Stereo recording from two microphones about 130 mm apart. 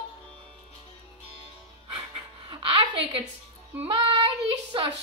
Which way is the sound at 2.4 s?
40° right (ahead or behind).